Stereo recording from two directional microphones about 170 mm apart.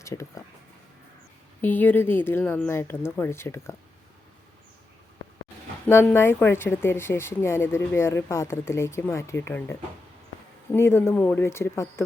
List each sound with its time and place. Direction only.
0.0 s speech: 15° left (ahead or behind)
1.6 s a woman's voice: 10° left (ahead or behind)
5.9 s a woman's voice: 15° left (ahead or behind)